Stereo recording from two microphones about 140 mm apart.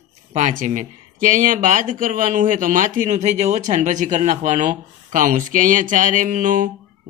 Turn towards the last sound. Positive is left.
turn(degrees=-70)  # may be behind; listen again after turning